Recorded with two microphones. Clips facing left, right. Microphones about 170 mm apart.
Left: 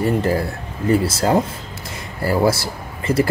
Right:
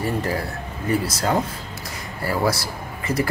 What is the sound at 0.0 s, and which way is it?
Speech, 25° left (ahead or behind).